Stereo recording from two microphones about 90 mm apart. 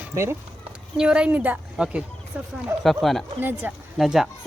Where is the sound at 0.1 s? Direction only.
30° right (ahead or behind).